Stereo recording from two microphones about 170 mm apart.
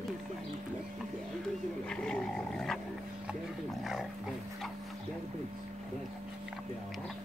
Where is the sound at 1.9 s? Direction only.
5° left (ahead or behind).